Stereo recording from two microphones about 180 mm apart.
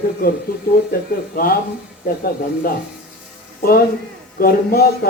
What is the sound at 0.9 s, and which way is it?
Speech, 55° left (ahead or behind).